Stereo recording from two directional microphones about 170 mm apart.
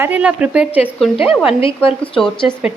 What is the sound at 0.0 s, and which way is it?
Speech, 10° right (ahead or behind).